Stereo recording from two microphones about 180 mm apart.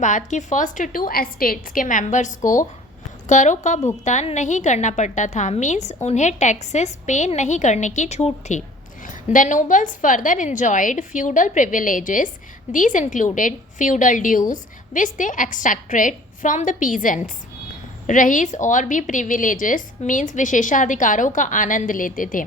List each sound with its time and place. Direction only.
0.0 s a woman's voice: 45° left (ahead or behind)